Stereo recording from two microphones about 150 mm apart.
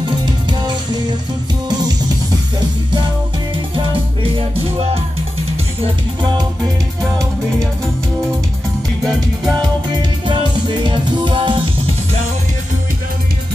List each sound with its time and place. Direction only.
5.8 s music: 30° right (ahead or behind)
10.8 s music: 35° right (ahead or behind)